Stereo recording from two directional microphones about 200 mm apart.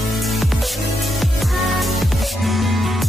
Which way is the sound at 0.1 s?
Centre (ahead or behind).